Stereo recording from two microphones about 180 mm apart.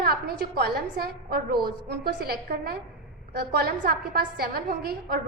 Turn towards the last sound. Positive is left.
turn(degrees=-60)  # may be behind; listen again after turning